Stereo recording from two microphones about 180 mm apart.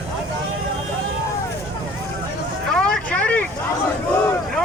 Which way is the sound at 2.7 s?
5° left (ahead or behind).